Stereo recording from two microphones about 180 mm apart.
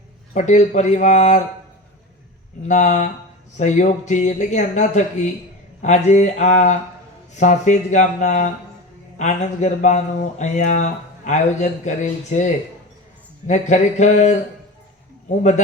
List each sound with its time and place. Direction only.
0.3 s speech: 40° left (ahead or behind)
2.6 s speech: 40° left (ahead or behind)